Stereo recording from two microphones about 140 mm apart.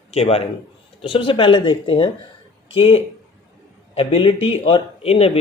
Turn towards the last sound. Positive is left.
turn(degrees=45)  # may be behind; listen again after turning